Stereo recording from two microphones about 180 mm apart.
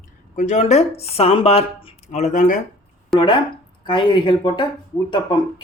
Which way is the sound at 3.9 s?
25° left (ahead or behind).